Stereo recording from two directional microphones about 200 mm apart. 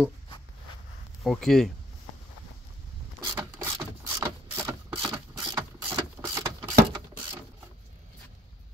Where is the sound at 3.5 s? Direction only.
15° right (ahead or behind).